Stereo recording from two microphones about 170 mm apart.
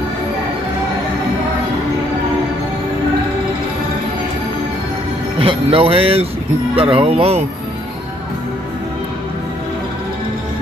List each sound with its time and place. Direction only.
5.4 s speech: 35° right (ahead or behind)